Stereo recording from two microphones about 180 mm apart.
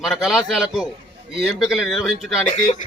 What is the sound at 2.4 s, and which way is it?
Speech, 40° left (ahead or behind).